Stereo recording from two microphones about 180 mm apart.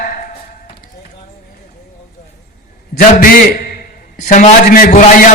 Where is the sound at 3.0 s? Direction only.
50° left (ahead or behind).